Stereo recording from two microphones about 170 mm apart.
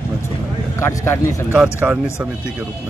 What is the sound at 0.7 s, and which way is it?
Speech, 15° left (ahead or behind).